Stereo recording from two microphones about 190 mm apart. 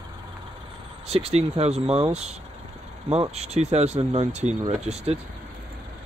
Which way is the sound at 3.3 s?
35° right (ahead or behind).